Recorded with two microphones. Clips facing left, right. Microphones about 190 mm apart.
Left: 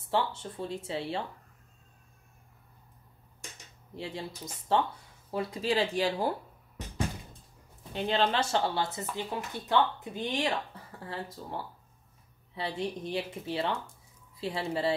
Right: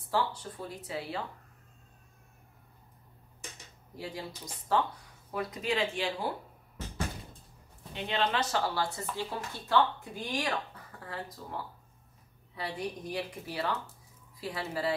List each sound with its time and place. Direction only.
0.1 s speech: 25° left (ahead or behind)
3.9 s speech: 25° left (ahead or behind)
7.9 s speech: 30° left (ahead or behind)